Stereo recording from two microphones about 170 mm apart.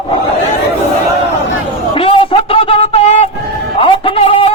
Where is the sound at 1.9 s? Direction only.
30° left (ahead or behind).